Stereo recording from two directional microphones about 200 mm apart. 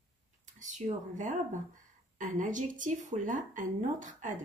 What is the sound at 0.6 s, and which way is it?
A woman's voice, 40° right (ahead or behind).